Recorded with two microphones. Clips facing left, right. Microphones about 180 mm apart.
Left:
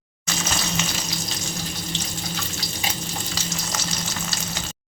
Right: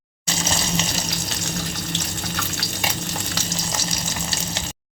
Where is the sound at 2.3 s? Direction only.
65° right (ahead or behind).